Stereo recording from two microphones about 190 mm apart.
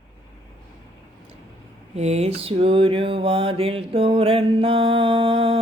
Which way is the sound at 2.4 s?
30° right (ahead or behind).